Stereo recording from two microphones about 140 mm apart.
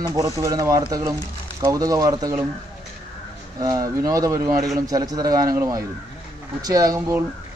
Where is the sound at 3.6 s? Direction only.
25° right (ahead or behind).